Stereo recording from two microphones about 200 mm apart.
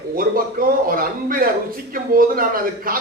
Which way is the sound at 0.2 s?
45° right (ahead or behind).